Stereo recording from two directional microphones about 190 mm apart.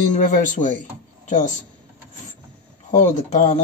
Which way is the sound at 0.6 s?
30° left (ahead or behind).